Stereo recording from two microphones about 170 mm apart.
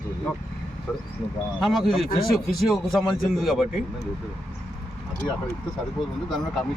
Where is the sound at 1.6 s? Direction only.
Centre (ahead or behind).